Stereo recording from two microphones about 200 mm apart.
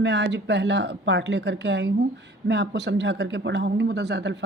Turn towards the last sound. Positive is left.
turn(degrees=-60)  # may be behind; listen again after turning